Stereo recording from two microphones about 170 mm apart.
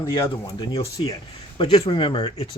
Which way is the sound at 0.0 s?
20° left (ahead or behind).